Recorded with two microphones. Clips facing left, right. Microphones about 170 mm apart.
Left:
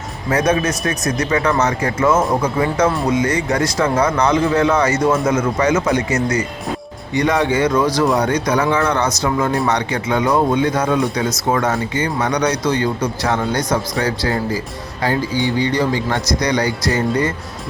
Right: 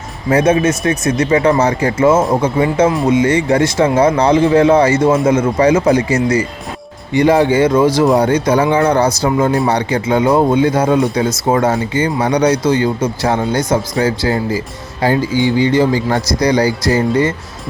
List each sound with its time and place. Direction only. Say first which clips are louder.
0.3 s speech: right 5 dB; 25° right (ahead or behind)